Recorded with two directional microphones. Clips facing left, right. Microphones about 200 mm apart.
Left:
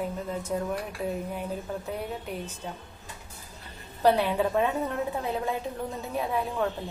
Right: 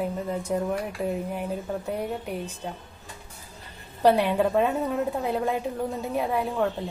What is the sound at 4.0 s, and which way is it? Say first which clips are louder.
A woman's voice: right 3 dB; 10° right (ahead or behind).